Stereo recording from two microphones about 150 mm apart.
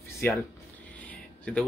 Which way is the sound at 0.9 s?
10° left (ahead or behind).